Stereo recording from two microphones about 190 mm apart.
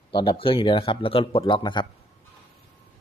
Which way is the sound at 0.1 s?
25° left (ahead or behind).